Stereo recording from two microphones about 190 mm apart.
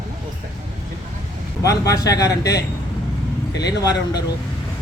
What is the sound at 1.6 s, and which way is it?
Speech, 20° left (ahead or behind).